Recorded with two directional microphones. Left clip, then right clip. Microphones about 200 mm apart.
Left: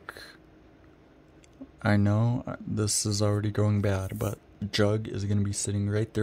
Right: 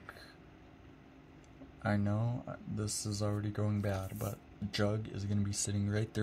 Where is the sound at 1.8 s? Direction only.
45° left (ahead or behind).